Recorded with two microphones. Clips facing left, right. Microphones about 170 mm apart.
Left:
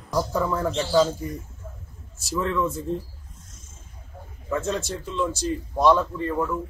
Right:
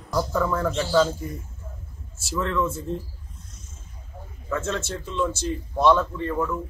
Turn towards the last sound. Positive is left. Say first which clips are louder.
# even
turn(degrees=10)  # may be behind; listen again after turning